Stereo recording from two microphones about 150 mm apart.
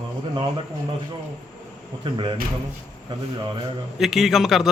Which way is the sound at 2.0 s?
30° right (ahead or behind).